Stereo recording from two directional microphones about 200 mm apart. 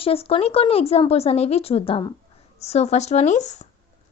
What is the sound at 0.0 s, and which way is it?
A woman's voice, 30° left (ahead or behind).